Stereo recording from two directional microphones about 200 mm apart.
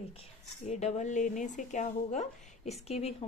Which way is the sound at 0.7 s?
35° left (ahead or behind).